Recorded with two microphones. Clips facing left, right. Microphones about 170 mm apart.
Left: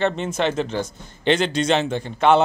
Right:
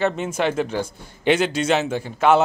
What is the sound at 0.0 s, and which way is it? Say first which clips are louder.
A man's voice: even; 10° right (ahead or behind).